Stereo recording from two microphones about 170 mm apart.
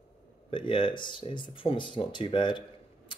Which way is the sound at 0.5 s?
30° left (ahead or behind).